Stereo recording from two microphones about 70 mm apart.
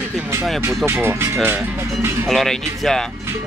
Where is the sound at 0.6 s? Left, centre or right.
Right.